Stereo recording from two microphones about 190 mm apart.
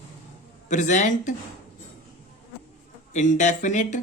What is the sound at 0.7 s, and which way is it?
Speech, 40° left (ahead or behind).